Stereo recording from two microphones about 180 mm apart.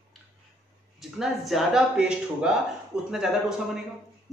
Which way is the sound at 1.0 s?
Centre (ahead or behind).